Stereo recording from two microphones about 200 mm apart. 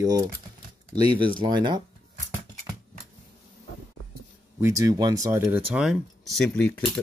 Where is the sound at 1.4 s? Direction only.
20° right (ahead or behind).